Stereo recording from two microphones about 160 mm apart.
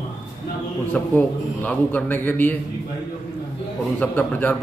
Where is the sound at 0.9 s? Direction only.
10° left (ahead or behind).